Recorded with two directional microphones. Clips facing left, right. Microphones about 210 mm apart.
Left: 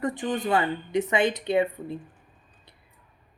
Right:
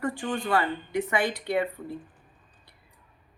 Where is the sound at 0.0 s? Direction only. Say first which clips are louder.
Left 2 dB; 20° left (ahead or behind).